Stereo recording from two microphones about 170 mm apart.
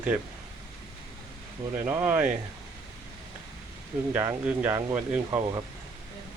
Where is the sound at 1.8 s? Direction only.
10° right (ahead or behind).